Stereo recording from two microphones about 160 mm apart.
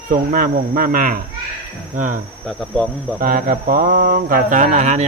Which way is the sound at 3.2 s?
60° right (ahead or behind).